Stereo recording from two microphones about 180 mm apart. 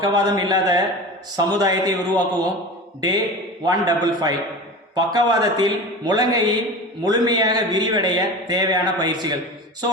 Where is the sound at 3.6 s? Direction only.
20° right (ahead or behind).